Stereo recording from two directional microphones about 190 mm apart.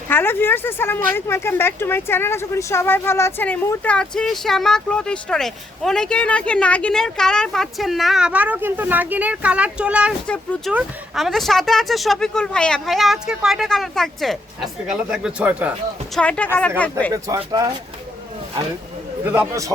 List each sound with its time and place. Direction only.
0.1 s speech: 10° left (ahead or behind); by 10.1 s 5° right (ahead or behind)
10.2 s speech: 5° left (ahead or behind)
16.1 s speech: 5° left (ahead or behind)
17.1 s speech: 20° right (ahead or behind)
19.2 s a man's voice: 10° right (ahead or behind)